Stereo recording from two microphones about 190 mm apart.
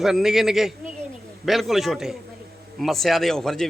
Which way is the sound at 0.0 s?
Centre (ahead or behind).